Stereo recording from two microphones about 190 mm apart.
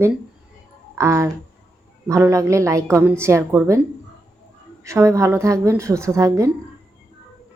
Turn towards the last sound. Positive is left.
turn(degrees=-15)  # may be behind; listen again after turning